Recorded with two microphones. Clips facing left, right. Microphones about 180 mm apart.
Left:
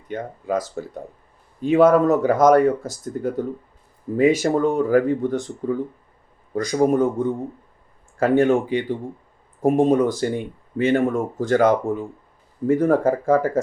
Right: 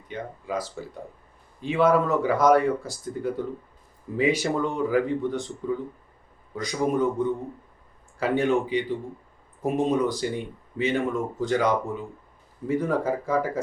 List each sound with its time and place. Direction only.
0.1 s speech: 45° left (ahead or behind)